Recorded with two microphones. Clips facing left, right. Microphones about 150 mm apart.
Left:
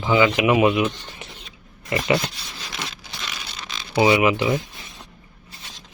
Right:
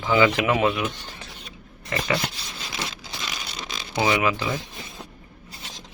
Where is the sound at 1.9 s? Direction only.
20° left (ahead or behind).